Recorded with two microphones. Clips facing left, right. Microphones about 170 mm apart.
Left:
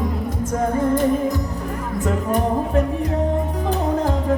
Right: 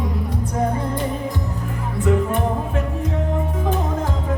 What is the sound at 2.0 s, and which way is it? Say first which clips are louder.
Music: right 2 dB; 40° left (ahead or behind).